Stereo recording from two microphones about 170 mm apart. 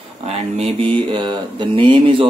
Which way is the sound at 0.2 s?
35° right (ahead or behind).